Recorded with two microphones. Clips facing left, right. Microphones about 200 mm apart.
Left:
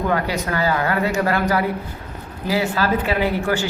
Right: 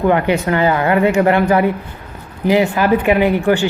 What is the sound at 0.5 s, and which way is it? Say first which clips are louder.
A man's voice: right 5 dB; 20° right (ahead or behind).